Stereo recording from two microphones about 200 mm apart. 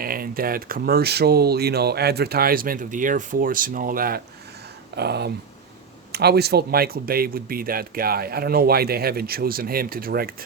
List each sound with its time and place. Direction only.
0.0 s speech: 45° right (ahead or behind)